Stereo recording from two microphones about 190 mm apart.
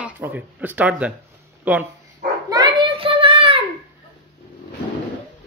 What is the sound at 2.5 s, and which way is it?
Child singing, 25° right (ahead or behind).